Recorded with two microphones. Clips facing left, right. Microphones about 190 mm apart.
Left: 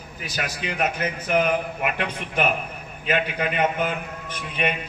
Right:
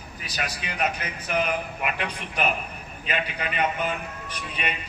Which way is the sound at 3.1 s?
50° left (ahead or behind).